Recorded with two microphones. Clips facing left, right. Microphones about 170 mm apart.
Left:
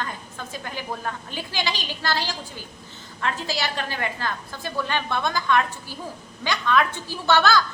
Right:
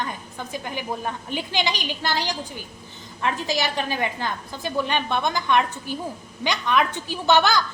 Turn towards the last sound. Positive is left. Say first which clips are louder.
# right 1 dB
turn(degrees=-15)  # may be behind; listen again after turning